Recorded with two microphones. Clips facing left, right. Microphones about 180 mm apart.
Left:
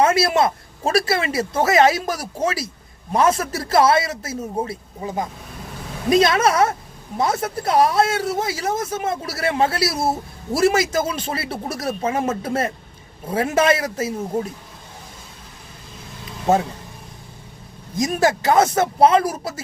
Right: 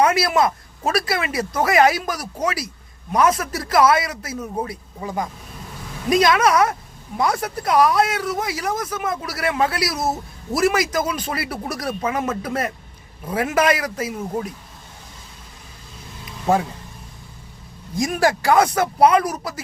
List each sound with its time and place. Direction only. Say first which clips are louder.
0.0 s speech: left 1 dB; 25° left (ahead or behind)
17.9 s speech: left 1 dB; 20° left (ahead or behind)